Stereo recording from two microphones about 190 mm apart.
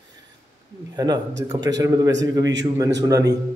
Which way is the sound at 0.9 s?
20° right (ahead or behind).